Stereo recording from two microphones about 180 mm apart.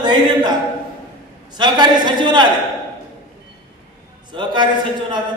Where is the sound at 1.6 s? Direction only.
25° right (ahead or behind).